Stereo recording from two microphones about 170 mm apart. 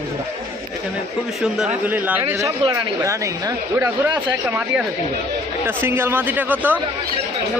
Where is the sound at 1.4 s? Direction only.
5° right (ahead or behind).